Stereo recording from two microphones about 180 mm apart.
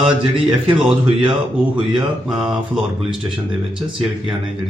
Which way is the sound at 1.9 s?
5° right (ahead or behind).